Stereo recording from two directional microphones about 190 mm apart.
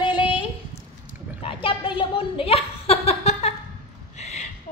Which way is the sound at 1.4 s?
30° left (ahead or behind).